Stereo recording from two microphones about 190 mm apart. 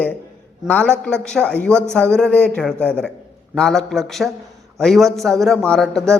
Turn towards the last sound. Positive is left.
turn(degrees=5)  # may be behind; listen again after turning